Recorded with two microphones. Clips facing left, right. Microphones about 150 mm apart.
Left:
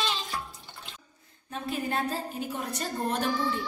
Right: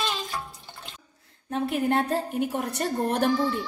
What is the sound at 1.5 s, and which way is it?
A woman's voice, 70° right (ahead or behind).